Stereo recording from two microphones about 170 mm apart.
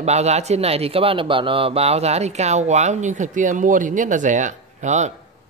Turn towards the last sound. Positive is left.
turn(degrees=-45)  # may be behind; listen again after turning